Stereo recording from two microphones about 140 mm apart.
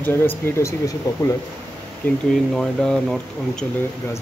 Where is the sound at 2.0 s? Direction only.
15° left (ahead or behind).